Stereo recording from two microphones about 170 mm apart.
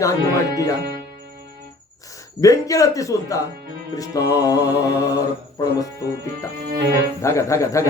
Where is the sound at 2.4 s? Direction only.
20° left (ahead or behind).